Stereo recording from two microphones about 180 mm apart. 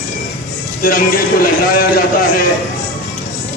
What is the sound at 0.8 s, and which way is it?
Speech, 50° left (ahead or behind).